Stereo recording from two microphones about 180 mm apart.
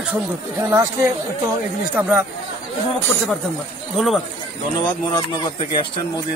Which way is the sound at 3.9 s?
Centre (ahead or behind).